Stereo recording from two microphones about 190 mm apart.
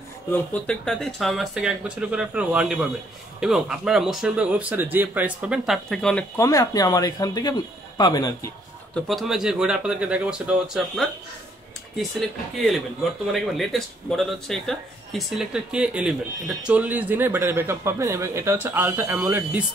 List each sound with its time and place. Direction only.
0.3 s speech: 5° left (ahead or behind)
6.3 s a man's voice: 15° left (ahead or behind)
8.9 s speech: centre (ahead or behind)